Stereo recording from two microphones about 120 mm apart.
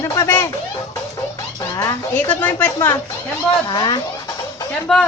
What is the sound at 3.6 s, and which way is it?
Speech, 40° left (ahead or behind).